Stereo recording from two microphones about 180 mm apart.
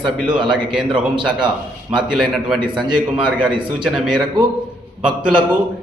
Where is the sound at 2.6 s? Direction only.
25° right (ahead or behind).